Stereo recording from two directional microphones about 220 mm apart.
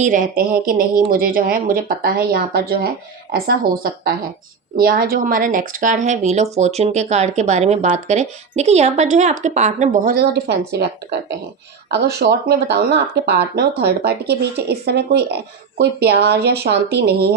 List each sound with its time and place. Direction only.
0.0 s speech: 35° right (ahead or behind)